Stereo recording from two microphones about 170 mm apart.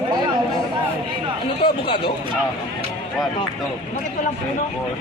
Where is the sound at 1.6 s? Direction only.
30° left (ahead or behind).